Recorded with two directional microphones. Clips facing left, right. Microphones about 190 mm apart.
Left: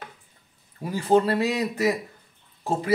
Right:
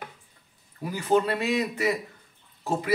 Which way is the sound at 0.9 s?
30° left (ahead or behind).